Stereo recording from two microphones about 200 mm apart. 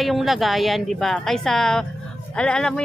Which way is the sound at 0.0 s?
Centre (ahead or behind).